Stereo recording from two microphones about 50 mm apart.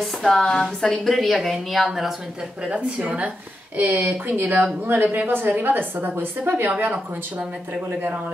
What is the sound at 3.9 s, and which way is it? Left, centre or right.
Speech, right.